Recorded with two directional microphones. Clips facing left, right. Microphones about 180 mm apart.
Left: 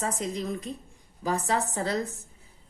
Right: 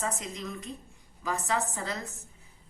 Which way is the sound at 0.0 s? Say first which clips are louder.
Left 4 dB; 35° left (ahead or behind).